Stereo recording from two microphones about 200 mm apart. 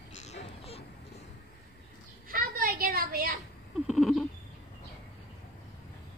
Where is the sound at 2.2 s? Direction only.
45° right (ahead or behind).